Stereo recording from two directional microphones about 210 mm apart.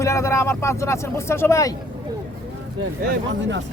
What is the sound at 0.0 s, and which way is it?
Speech, 15° left (ahead or behind).